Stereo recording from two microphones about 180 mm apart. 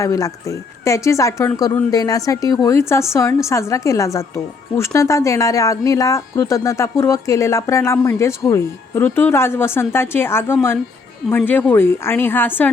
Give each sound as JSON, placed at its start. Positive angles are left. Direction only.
{"t": 0.0, "sound": "speech", "side_deg": 20}